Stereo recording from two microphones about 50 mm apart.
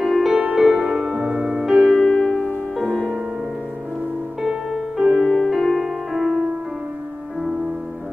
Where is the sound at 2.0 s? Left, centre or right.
Centre.